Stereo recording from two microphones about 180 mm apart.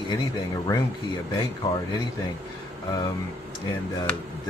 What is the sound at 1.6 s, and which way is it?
Speech, 20° left (ahead or behind).